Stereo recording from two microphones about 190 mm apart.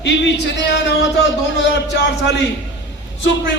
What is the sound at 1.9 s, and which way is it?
Speech, 65° left (ahead or behind).